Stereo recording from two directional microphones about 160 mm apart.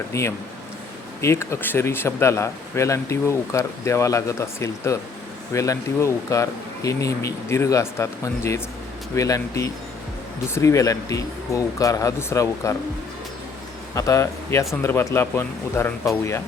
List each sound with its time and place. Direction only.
0.1 s speech: 20° left (ahead or behind)
13.9 s speech: 20° left (ahead or behind)